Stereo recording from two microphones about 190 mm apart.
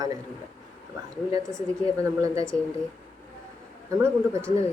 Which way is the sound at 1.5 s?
5° left (ahead or behind).